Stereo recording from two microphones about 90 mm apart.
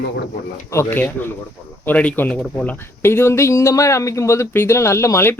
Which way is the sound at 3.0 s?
25° left (ahead or behind).